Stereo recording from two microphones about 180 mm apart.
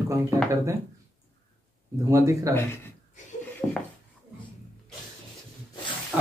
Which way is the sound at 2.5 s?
10° left (ahead or behind).